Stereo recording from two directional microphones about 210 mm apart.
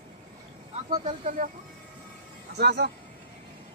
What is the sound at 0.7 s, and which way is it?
Speech, 30° right (ahead or behind).